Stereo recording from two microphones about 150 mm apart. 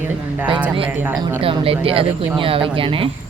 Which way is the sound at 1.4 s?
40° right (ahead or behind).